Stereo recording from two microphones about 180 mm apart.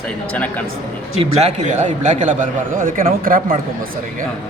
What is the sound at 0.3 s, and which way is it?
Speech, 10° left (ahead or behind).